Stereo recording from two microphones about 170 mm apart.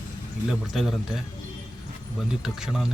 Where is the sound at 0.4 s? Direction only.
Centre (ahead or behind).